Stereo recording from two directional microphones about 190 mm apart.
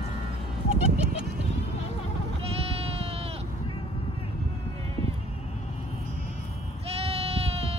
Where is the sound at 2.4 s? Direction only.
30° right (ahead or behind).